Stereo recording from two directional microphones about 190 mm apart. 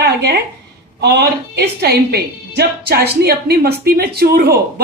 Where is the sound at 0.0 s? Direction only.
60° right (ahead or behind).